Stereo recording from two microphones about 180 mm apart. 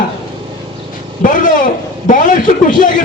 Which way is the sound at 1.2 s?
45° left (ahead or behind).